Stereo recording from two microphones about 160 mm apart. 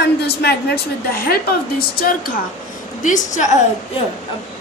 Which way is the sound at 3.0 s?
50° left (ahead or behind).